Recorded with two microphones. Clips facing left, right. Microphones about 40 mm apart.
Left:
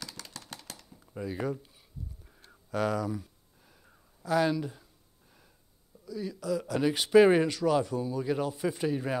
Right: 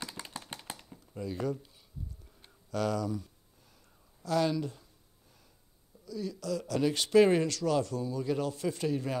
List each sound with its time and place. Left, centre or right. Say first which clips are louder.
0.2 s a sound: right 2 dB; right
0.9 s speech: left 2 dB; centre
2.7 s speech: left 2 dB; centre
6.0 s speech: left 2 dB; centre